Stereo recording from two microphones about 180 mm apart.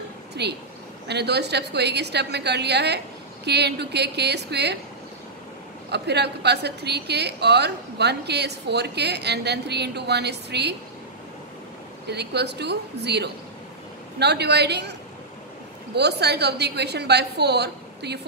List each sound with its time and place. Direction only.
0.3 s a sound: 70° right (ahead or behind)
1.0 s a woman's voice: 65° right (ahead or behind)
5.9 s a woman's voice: 65° right (ahead or behind)
12.1 s a woman's voice: 65° right (ahead or behind)